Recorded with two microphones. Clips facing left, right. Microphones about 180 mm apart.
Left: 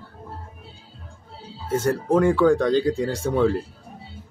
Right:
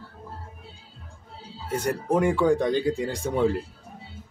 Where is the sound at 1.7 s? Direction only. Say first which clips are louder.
Left 4 dB; 15° right (ahead or behind).